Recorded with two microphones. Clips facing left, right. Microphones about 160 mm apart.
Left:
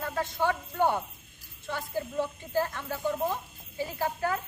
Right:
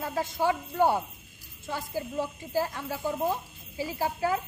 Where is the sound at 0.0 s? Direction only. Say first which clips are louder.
Right 1 dB; 10° right (ahead or behind).